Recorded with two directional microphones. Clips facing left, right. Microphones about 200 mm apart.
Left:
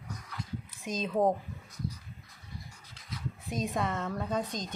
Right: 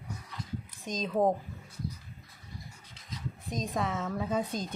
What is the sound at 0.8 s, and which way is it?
Speech, 5° left (ahead or behind).